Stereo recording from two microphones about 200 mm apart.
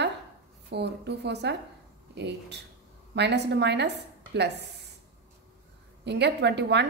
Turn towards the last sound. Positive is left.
turn(degrees=-60)  # may be behind; listen again after turning